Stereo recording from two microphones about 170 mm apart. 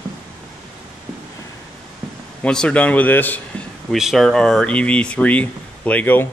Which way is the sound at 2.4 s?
5° left (ahead or behind).